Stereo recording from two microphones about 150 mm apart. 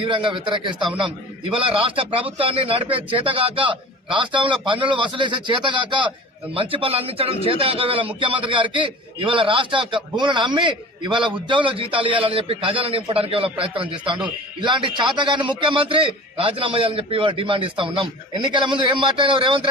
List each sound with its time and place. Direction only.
0.0 s a man's voice: 35° right (ahead or behind)